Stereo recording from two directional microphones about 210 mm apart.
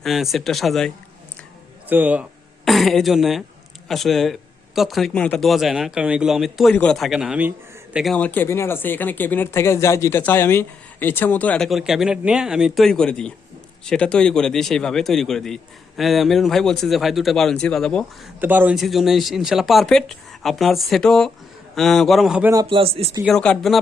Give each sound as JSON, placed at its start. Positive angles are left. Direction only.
{"t": 0.0, "sound": "speech", "side_deg": 0}
{"t": 18.3, "sound": "speech", "side_deg": -10}
{"t": 22.6, "sound": "speech", "side_deg": -25}
{"t": 23.2, "sound": "speech", "side_deg": 5}